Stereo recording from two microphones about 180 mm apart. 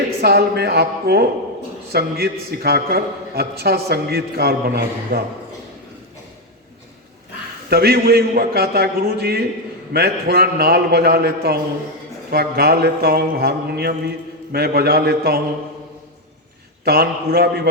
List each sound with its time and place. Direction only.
0.2 s a man's voice: 60° right (ahead or behind)
7.7 s a man's voice: 60° right (ahead or behind)
16.8 s a man's voice: 60° right (ahead or behind)